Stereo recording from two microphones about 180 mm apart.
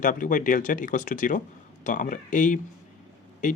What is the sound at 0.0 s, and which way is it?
Speech, 45° left (ahead or behind).